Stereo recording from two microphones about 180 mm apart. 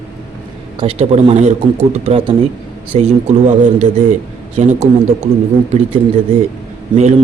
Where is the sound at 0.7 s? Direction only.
35° right (ahead or behind).